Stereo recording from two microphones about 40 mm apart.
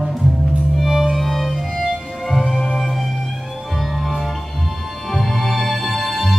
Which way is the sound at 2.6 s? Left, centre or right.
Centre.